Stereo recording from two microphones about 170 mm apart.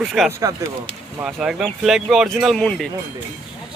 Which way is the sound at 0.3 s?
15° right (ahead or behind).